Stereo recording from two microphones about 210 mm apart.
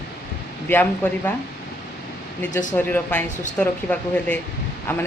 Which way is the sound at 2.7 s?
10° left (ahead or behind).